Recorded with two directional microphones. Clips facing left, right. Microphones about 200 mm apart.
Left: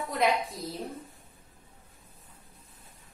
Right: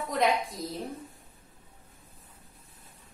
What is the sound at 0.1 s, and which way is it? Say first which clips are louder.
Speech: right 1 dB; centre (ahead or behind).